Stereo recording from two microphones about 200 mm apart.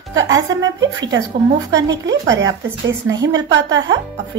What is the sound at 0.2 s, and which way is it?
Speech, 15° right (ahead or behind).